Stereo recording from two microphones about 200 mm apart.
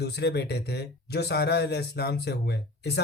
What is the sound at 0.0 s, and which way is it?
Speech, 55° left (ahead or behind).